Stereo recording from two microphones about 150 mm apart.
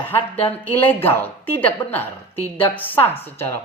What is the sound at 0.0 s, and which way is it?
Speech, 15° left (ahead or behind).